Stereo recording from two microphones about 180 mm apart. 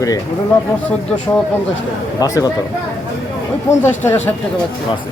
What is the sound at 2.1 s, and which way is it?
Speech, 20° left (ahead or behind).